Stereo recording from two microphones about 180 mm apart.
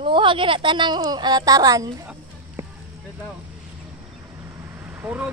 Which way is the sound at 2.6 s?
15° right (ahead or behind).